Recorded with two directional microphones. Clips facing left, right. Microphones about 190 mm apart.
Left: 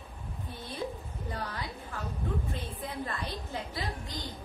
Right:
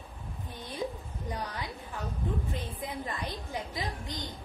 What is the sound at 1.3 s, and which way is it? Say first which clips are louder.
A woman's voice: right 1 dB; 15° right (ahead or behind).